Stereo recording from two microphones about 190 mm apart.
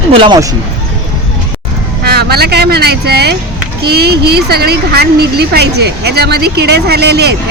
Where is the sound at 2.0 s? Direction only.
55° right (ahead or behind).